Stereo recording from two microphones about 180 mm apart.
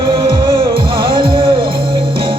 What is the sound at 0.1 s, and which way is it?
Music, 30° right (ahead or behind).